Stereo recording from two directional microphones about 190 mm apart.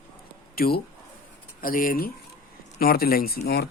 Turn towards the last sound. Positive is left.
turn(degrees=55)  # may be behind; listen again after turning